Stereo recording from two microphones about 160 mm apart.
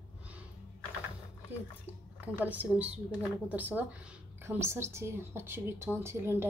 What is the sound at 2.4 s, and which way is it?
A woman's voice, 10° right (ahead or behind).